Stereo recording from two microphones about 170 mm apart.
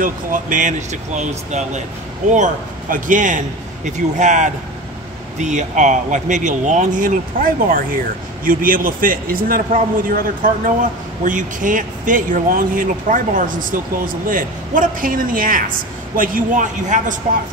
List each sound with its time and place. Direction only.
0.0 s a man's voice: 50° right (ahead or behind)